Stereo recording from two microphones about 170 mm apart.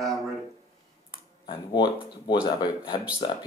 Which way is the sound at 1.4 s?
25° left (ahead or behind).